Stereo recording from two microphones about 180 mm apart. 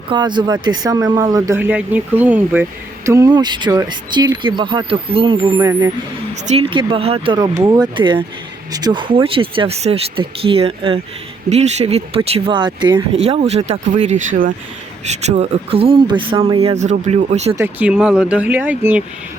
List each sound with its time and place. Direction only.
0.1 s speech: 25° right (ahead or behind); by 2.6 s 10° right (ahead or behind)
3.1 s speech: 20° right (ahead or behind)
7.3 s speech: 20° right (ahead or behind); by 17.5 s 40° right (ahead or behind)
17.6 s speech: 10° right (ahead or behind)